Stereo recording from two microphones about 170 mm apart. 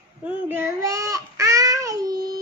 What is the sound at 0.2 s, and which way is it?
Child singing, 15° right (ahead or behind).